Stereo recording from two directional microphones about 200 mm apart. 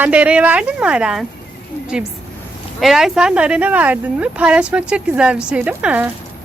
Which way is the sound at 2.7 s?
Centre (ahead or behind).